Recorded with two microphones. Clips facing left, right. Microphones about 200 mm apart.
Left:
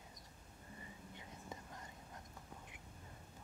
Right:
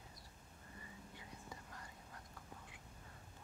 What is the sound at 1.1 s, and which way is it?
Whispering, 20° left (ahead or behind).